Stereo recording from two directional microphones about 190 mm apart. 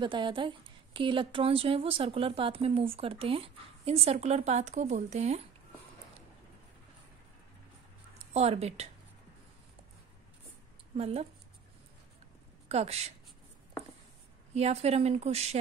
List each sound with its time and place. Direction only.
0.0 s speech: 25° right (ahead or behind)
8.3 s a woman's voice: 35° right (ahead or behind)
11.0 s a woman's voice: 30° right (ahead or behind)
12.6 s a woman's voice: 35° right (ahead or behind)
14.5 s a woman's voice: 35° right (ahead or behind)